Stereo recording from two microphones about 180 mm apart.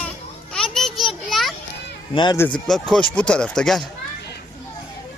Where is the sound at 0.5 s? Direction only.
Centre (ahead or behind).